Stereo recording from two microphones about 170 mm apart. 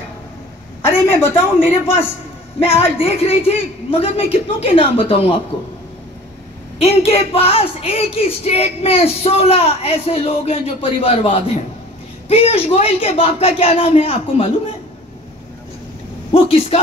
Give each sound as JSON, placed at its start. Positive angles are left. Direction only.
{"t": 0.8, "sound": "a sound", "side_deg": 15}
{"t": 2.8, "sound": "speech", "side_deg": 35}
{"t": 6.8, "sound": "speech", "side_deg": 35}
{"t": 16.3, "sound": "speech", "side_deg": 35}